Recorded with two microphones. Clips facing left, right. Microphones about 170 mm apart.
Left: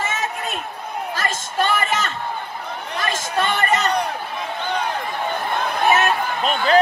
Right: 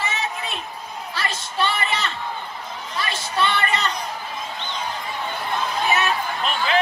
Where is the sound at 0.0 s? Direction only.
45° left (ahead or behind).